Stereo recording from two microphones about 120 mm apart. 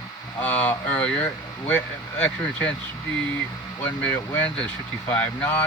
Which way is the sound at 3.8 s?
15° left (ahead or behind).